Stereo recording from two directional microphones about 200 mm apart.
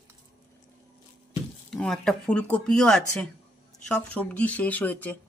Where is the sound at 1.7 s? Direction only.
5° left (ahead or behind).